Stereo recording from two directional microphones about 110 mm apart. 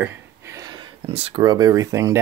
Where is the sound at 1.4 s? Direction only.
40° right (ahead or behind).